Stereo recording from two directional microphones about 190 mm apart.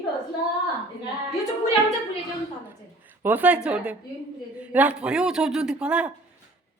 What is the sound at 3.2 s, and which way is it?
A woman's voice, 10° right (ahead or behind).